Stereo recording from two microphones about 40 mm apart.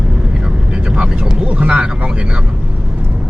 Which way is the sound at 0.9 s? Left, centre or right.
Centre.